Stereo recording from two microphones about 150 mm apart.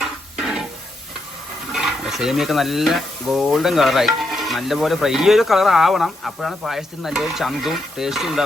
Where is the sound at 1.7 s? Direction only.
Centre (ahead or behind).